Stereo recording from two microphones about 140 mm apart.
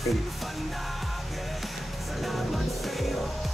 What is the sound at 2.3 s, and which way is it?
Music, centre (ahead or behind).